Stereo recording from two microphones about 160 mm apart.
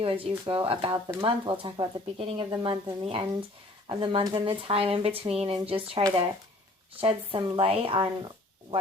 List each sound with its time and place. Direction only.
0.0 s speech: 35° right (ahead or behind)
7.0 s speech: 35° right (ahead or behind)